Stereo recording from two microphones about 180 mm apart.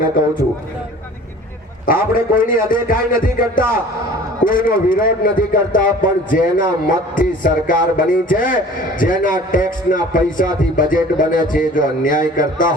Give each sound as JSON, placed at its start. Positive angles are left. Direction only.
{"t": 1.9, "sound": "a man's voice", "side_deg": 55}